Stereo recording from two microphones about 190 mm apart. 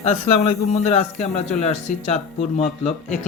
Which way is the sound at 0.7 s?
40° left (ahead or behind).